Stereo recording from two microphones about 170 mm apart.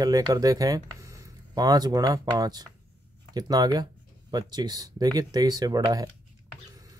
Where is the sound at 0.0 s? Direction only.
20° right (ahead or behind).